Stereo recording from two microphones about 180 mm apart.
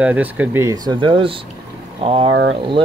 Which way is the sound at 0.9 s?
25° right (ahead or behind).